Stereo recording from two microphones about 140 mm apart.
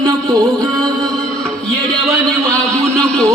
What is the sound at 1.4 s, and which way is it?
Music, 5° left (ahead or behind).